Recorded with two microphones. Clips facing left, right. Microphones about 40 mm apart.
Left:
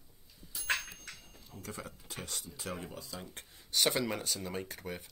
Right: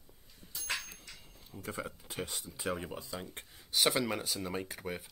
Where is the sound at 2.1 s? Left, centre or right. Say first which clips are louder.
Right 3 dB; centre.